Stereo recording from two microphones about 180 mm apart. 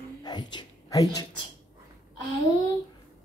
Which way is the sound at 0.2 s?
25° left (ahead or behind).